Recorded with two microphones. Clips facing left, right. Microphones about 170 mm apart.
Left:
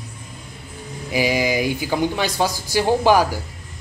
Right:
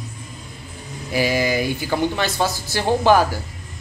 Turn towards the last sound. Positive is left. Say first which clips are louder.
# even
turn(degrees=10)  # may be behind; listen again after turning